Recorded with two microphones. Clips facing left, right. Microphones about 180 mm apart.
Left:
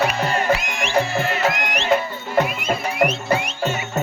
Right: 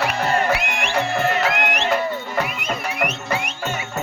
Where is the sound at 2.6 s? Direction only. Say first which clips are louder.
Left 4 dB; 30° left (ahead or behind).